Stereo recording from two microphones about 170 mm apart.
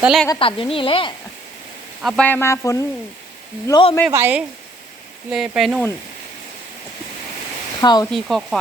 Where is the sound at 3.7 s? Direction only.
30° left (ahead or behind).